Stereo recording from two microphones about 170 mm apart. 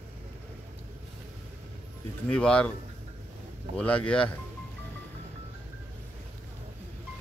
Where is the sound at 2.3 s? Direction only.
5° left (ahead or behind).